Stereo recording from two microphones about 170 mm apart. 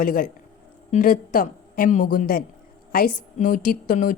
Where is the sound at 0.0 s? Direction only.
55° left (ahead or behind).